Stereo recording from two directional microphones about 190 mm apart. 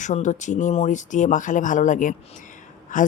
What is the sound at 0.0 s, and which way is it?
Speech, 40° left (ahead or behind).